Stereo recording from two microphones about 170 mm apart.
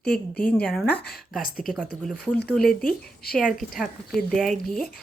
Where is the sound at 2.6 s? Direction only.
60° left (ahead or behind).